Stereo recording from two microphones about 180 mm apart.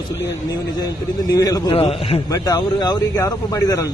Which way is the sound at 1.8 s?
35° left (ahead or behind).